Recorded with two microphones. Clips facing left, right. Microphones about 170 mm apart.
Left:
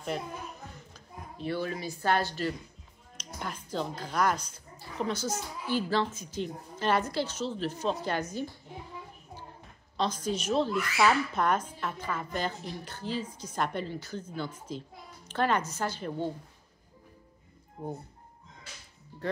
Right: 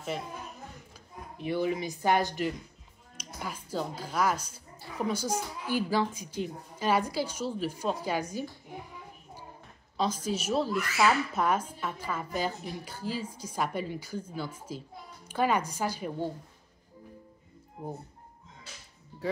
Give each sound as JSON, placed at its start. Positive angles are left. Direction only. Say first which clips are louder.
{"t": 0.1, "sound": "speech", "louder": "left 1 dB", "side_deg": 0}
{"t": 1.4, "sound": "speech", "louder": "right 3 dB", "side_deg": -15}
{"t": 9.9, "sound": "speech", "louder": "even", "side_deg": -10}